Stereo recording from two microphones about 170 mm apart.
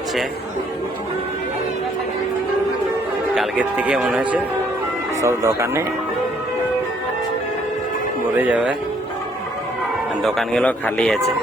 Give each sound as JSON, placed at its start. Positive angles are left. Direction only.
{"t": 3.3, "sound": "speech", "side_deg": -5}
{"t": 5.2, "sound": "speech", "side_deg": -15}
{"t": 8.4, "sound": "speech", "side_deg": -10}
{"t": 10.2, "sound": "speech", "side_deg": 5}